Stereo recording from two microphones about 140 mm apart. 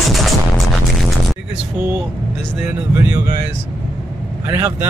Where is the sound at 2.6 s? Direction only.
15° right (ahead or behind).